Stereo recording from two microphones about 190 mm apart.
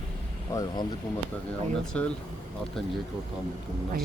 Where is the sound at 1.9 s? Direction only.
5° left (ahead or behind).